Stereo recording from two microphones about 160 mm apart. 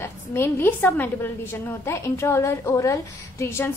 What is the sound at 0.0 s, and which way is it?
A woman's voice, 15° left (ahead or behind).